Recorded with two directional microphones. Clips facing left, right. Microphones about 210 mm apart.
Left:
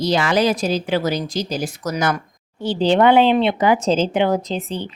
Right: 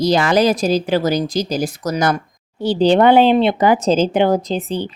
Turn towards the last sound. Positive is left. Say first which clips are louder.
# right 3 dB
turn(degrees=-35)  # may be behind; listen again after turning